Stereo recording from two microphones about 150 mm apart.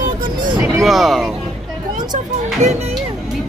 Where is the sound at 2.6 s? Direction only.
50° right (ahead or behind).